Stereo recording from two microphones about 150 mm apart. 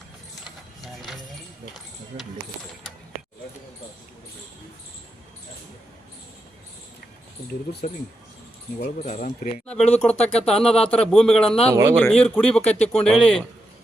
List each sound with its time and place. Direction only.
9.0 s speech: 55° left (ahead or behind)
9.6 s a man's voice: 5° left (ahead or behind)
11.7 s speech: 25° right (ahead or behind)
11.9 s a man's voice: 5° left (ahead or behind)